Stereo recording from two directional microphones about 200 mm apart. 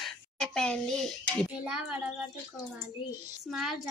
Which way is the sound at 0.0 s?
5° left (ahead or behind).